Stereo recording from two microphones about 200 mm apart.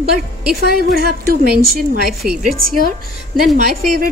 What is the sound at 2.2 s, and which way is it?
Speech, 45° right (ahead or behind).